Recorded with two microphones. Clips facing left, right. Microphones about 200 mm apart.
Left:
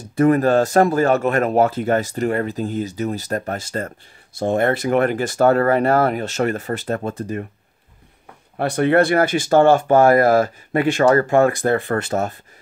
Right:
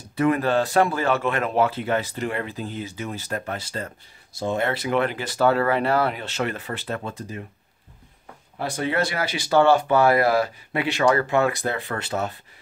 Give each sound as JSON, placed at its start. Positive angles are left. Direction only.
{"t": 0.1, "sound": "speech", "side_deg": 45}
{"t": 8.5, "sound": "speech", "side_deg": 60}